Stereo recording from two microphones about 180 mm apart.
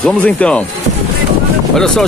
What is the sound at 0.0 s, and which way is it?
Speech, 5° left (ahead or behind).